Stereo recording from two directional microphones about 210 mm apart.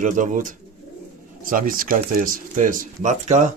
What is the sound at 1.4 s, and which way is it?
Speech, 40° right (ahead or behind).